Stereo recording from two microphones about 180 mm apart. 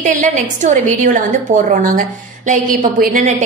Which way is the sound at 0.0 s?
45° right (ahead or behind).